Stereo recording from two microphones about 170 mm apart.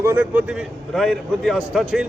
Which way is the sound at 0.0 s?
10° right (ahead or behind).